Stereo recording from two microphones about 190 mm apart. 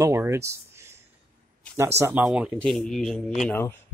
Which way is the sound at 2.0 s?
10° right (ahead or behind).